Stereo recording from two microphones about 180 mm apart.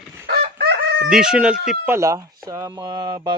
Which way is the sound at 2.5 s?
20° right (ahead or behind).